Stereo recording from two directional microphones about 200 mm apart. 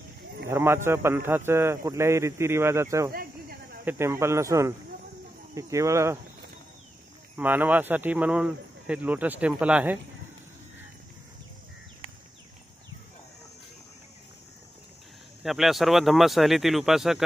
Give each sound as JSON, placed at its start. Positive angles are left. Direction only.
{"t": 0.5, "sound": "a man's voice", "side_deg": -10}
{"t": 3.1, "sound": "a sound", "side_deg": -50}
{"t": 3.8, "sound": "a man's voice", "side_deg": -15}
{"t": 7.3, "sound": "a man's voice", "side_deg": -10}
{"t": 15.4, "sound": "speech", "side_deg": 0}